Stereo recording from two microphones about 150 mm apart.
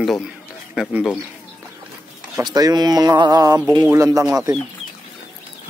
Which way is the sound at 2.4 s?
25° right (ahead or behind).